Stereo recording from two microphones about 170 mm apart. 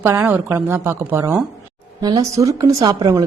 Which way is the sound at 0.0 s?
10° right (ahead or behind).